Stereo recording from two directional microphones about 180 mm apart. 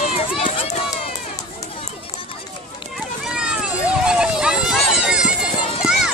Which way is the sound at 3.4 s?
5° right (ahead or behind).